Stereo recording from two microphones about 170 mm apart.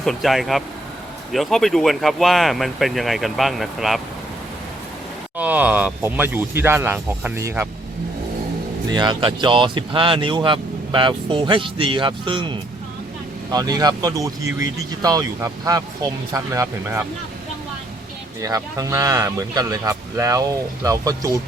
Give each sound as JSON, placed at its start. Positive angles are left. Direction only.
{"t": 0.0, "sound": "speech", "side_deg": 0}
{"t": 5.4, "sound": "speech", "side_deg": -10}
{"t": 8.9, "sound": "speech", "side_deg": -25}
{"t": 18.4, "sound": "speech", "side_deg": -20}